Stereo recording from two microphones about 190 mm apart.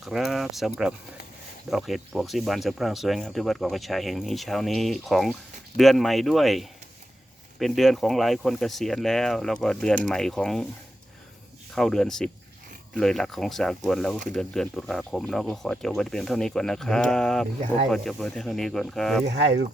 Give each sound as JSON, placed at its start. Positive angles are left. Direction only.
{"t": 0.0, "sound": "a sound", "side_deg": 0}
{"t": 1.7, "sound": "speech", "side_deg": 0}
{"t": 11.7, "sound": "speech", "side_deg": 0}
{"t": 19.2, "sound": "speech", "side_deg": -65}